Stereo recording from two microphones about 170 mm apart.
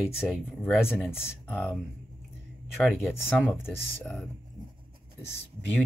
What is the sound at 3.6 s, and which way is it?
Speech, 10° left (ahead or behind).